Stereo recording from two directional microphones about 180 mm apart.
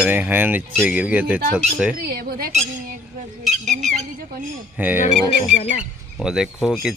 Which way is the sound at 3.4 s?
Centre (ahead or behind).